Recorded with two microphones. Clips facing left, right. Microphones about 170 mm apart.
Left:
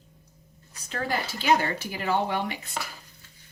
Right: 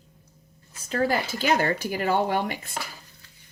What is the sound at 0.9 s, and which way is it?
Speech, 45° right (ahead or behind).